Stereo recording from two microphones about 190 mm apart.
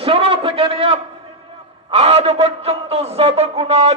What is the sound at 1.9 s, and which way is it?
A man's voice, 30° right (ahead or behind).